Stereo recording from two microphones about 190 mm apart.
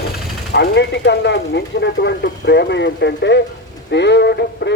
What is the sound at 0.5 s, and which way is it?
Speech, 60° left (ahead or behind).